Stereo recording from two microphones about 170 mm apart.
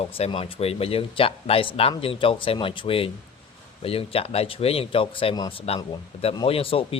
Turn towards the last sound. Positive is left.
turn(degrees=35)  # may be behind; listen again after turning